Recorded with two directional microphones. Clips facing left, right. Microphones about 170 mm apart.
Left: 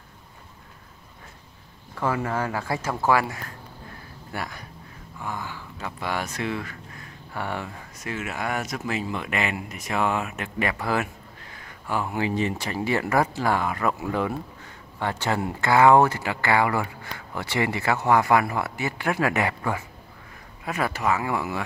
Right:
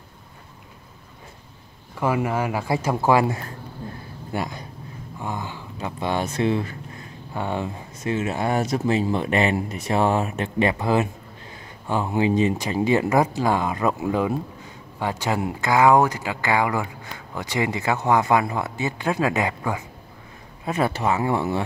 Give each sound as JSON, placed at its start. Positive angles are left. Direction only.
{"t": 2.0, "sound": "speech", "side_deg": -15}
{"t": 20.6, "sound": "speech", "side_deg": -25}